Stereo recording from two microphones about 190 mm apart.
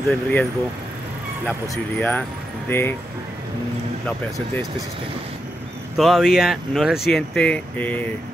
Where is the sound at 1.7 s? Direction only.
10° left (ahead or behind).